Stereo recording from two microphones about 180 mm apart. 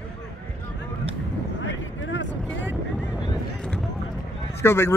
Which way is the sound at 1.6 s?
90° left.